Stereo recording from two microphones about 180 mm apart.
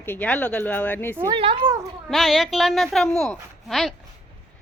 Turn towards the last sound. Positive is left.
turn(degrees=0)  # may be behind; listen again after turning